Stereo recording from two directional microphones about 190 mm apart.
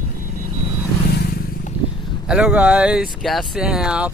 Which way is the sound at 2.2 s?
5° right (ahead or behind).